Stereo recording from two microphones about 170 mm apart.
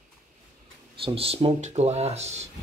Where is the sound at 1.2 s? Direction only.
35° right (ahead or behind).